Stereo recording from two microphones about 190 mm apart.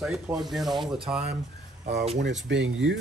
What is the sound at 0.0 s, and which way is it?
Speech, 5° right (ahead or behind).